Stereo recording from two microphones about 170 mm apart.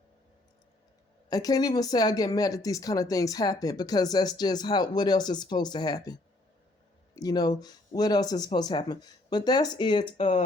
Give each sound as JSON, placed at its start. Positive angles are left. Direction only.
{"t": 1.3, "sound": "speech", "side_deg": 20}
{"t": 7.2, "sound": "speech", "side_deg": 25}
{"t": 10.2, "sound": "speech", "side_deg": 40}